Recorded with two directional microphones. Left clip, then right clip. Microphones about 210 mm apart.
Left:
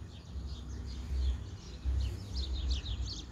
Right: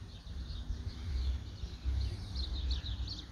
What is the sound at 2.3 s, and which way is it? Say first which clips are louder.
Bird: even; 50° left (ahead or behind).